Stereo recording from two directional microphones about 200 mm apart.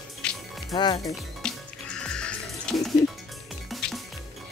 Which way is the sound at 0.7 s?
20° left (ahead or behind).